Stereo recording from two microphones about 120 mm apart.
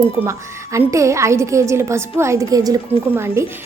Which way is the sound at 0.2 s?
20° right (ahead or behind).